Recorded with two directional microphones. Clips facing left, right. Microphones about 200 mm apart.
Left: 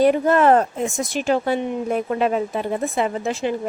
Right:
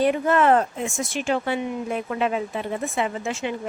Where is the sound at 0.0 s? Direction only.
40° left (ahead or behind).